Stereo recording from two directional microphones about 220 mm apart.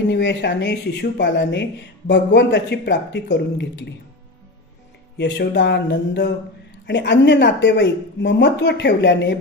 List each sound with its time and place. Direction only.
0.1 s speech: 50° left (ahead or behind)
5.1 s speech: 50° left (ahead or behind)